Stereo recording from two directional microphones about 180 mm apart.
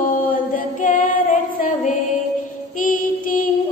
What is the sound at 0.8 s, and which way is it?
Female singing, 45° left (ahead or behind).